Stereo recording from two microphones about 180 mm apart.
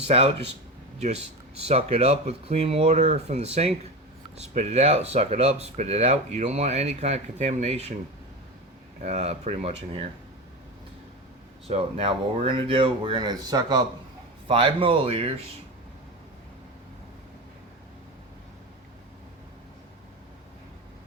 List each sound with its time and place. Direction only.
0.1 s speech: 35° right (ahead or behind)
9.0 s speech: 35° right (ahead or behind)
11.7 s speech: 35° right (ahead or behind)